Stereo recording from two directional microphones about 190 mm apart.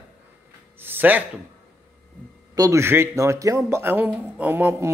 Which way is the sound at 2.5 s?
15° right (ahead or behind).